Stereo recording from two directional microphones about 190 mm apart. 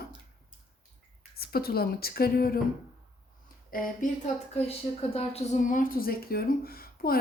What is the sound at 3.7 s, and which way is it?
Speech, 40° left (ahead or behind).